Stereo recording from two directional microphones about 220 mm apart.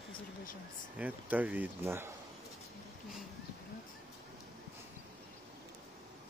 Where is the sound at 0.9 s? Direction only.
5° right (ahead or behind).